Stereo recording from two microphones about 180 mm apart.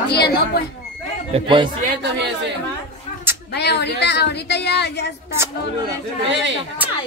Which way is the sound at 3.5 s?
70° left (ahead or behind).